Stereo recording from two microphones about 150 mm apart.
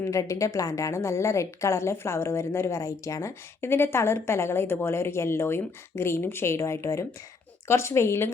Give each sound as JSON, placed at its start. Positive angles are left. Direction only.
{"t": 0.0, "sound": "a woman's voice", "side_deg": 20}